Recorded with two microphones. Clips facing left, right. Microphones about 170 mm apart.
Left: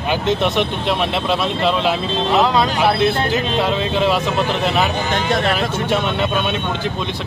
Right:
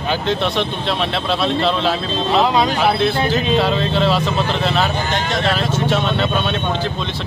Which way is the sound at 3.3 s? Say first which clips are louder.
Right 2 dB; 10° left (ahead or behind).